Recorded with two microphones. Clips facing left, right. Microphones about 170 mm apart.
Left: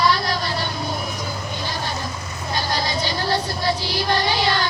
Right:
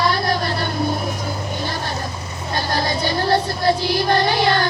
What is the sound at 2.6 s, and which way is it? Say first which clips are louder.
Vehicle: right 3 dB; 55° right (ahead or behind).